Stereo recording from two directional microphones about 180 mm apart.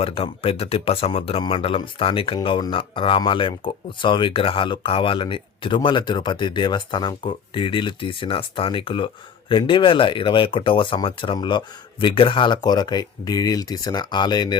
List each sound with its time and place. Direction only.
0.0 s speech: 30° left (ahead or behind)